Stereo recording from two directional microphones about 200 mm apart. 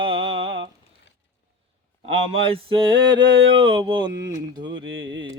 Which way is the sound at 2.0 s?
25° right (ahead or behind).